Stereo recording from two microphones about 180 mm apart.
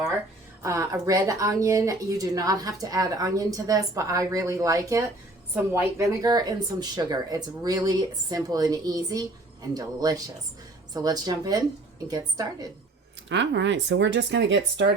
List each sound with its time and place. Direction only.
0.6 s speech: 15° right (ahead or behind)
6.2 s speech: 20° right (ahead or behind)
13.2 s speech: 80° right